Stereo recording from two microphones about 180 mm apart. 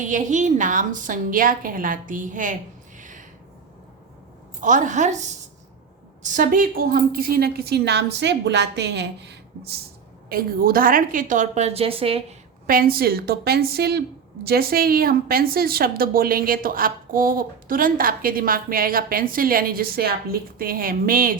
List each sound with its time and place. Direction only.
0.0 s a woman's voice: 45° right (ahead or behind)
3.0 s a sound: 45° right (ahead or behind)
4.6 s a woman's voice: 45° right (ahead or behind); by 9.8 s 65° right (ahead or behind)
10.2 s a woman's voice: 55° right (ahead or behind); by 12.2 s 30° right (ahead or behind)
12.6 s a woman's voice: 55° right (ahead or behind)